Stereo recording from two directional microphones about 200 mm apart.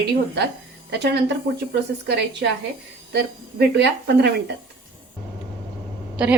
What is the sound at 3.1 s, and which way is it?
A woman's voice, 55° right (ahead or behind).